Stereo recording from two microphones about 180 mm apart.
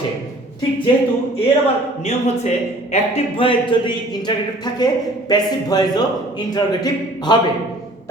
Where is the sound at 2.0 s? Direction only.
40° left (ahead or behind).